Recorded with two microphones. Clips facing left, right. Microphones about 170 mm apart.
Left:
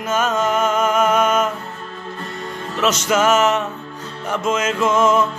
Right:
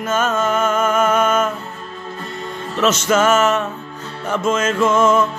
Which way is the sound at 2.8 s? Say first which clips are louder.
Right 2 dB; 15° left (ahead or behind).